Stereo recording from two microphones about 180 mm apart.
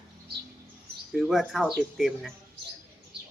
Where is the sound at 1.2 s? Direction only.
Centre (ahead or behind).